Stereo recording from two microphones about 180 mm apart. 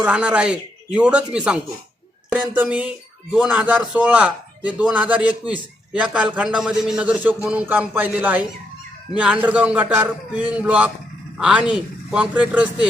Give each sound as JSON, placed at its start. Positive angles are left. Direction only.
{"t": 0.0, "sound": "a man's voice", "side_deg": -5}